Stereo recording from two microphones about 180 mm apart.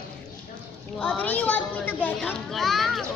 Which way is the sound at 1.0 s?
5° left (ahead or behind).